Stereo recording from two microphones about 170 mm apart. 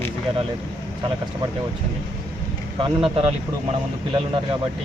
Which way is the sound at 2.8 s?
30° right (ahead or behind).